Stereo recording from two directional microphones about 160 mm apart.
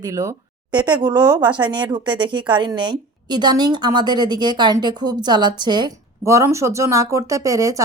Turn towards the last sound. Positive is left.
turn(degrees=-20)  # may be behind; listen again after turning